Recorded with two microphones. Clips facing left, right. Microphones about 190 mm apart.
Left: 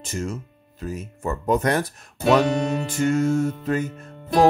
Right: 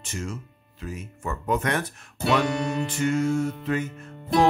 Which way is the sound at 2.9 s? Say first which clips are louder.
Left 4 dB; 45° left (ahead or behind).